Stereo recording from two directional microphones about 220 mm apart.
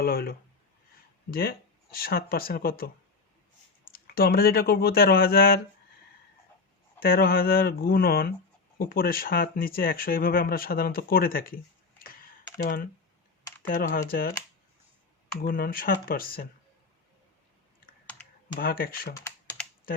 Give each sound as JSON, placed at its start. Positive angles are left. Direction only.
{"t": 0.0, "sound": "speech", "side_deg": 45}
{"t": 3.9, "sound": "speech", "side_deg": 45}
{"t": 7.0, "sound": "speech", "side_deg": 45}
{"t": 15.4, "sound": "speech", "side_deg": 40}
{"t": 18.5, "sound": "speech", "side_deg": 40}